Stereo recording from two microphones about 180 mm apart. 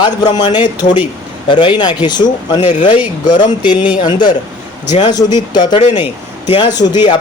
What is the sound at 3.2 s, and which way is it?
A man's voice, 25° left (ahead or behind).